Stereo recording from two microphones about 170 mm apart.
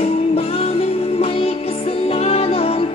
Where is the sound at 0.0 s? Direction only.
35° left (ahead or behind).